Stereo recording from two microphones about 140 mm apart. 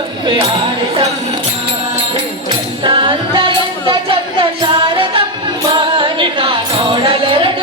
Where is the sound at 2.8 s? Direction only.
35° right (ahead or behind).